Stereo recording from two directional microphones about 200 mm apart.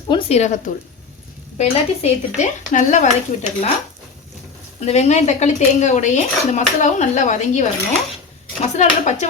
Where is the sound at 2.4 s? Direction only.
40° left (ahead or behind).